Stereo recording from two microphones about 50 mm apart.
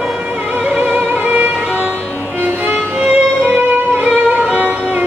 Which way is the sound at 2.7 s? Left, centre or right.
Right.